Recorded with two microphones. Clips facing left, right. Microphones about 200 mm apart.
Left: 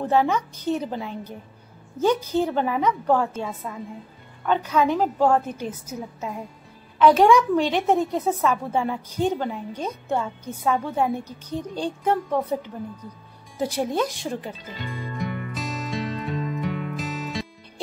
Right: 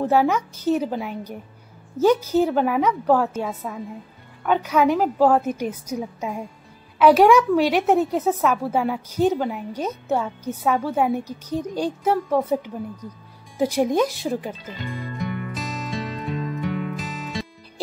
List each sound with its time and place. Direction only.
0.0 s a woman's voice: 10° right (ahead or behind)
13.6 s a woman's voice: 10° right (ahead or behind)
14.5 s music: centre (ahead or behind)